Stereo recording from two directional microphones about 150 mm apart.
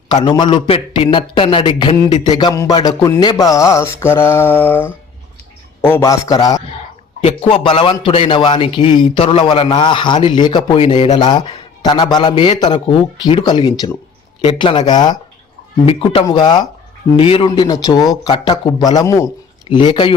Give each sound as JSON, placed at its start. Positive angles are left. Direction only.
{"t": 0.3, "sound": "speech", "side_deg": 30}
{"t": 3.2, "sound": "mantra", "side_deg": 25}
{"t": 5.8, "sound": "speech", "side_deg": 15}
{"t": 7.2, "sound": "speech", "side_deg": 40}
{"t": 15.9, "sound": "speech", "side_deg": 40}
{"t": 16.2, "sound": "speech", "side_deg": 30}